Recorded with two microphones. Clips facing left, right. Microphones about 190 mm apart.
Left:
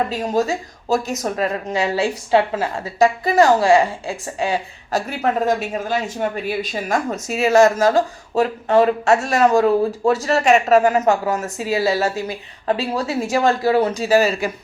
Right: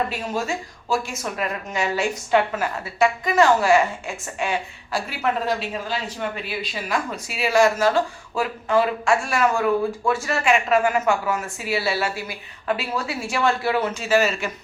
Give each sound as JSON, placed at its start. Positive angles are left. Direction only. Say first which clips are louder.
{"t": 0.2, "sound": "a woman's voice", "louder": "left 6 dB", "side_deg": 40}